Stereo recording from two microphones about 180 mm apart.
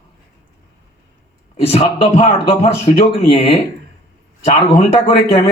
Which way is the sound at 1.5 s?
30° left (ahead or behind).